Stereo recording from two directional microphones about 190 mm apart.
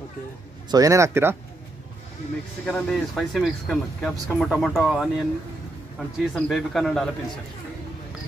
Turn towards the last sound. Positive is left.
turn(degrees=0)  # may be behind; listen again after turning